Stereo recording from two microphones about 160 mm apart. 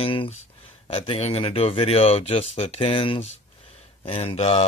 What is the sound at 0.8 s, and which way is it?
Speech, 35° left (ahead or behind).